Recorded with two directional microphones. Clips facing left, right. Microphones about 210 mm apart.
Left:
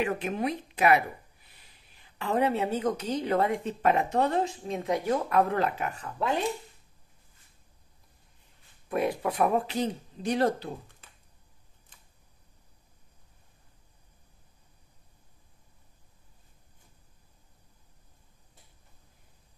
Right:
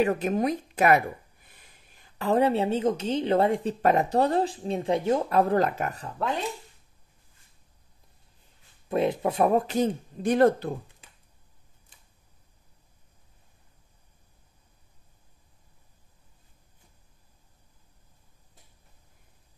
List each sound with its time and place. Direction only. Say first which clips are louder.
0.0 s speech: right 5 dB; 40° right (ahead or behind)
8.8 s speech: right 3 dB; 25° right (ahead or behind); by 10.7 s 50° right (ahead or behind)